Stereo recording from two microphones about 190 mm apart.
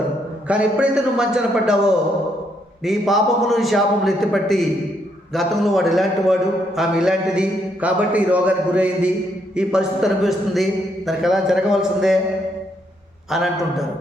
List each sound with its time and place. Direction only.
0.4 s a man's voice: 5° right (ahead or behind)
13.3 s a man's voice: centre (ahead or behind)